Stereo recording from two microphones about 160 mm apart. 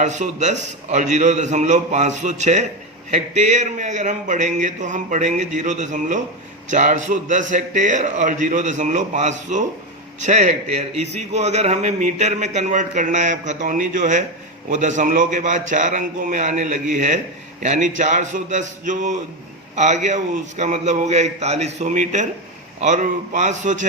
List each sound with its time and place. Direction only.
0.0 s speech: 50° right (ahead or behind)